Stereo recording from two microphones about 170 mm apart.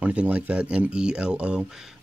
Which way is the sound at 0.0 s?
10° right (ahead or behind).